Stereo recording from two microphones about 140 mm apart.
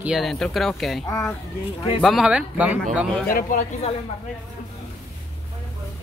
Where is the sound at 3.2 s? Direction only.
75° left (ahead or behind).